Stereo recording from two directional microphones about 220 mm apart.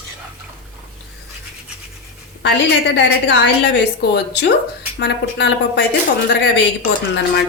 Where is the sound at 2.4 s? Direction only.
55° left (ahead or behind).